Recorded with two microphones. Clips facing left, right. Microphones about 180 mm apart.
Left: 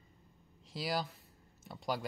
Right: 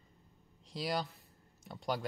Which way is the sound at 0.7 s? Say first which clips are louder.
Even; centre (ahead or behind).